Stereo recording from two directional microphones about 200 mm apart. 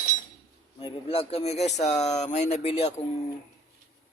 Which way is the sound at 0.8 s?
30° left (ahead or behind).